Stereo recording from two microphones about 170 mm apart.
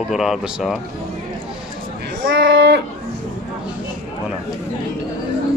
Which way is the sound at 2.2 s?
90° right.